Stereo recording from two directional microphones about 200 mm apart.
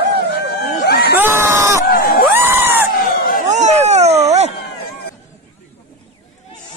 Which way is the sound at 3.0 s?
50° left (ahead or behind).